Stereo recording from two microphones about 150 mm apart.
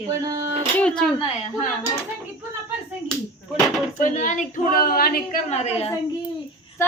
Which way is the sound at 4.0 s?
55° left (ahead or behind).